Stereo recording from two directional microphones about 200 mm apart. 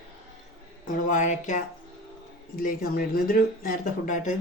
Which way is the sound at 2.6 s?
45° left (ahead or behind).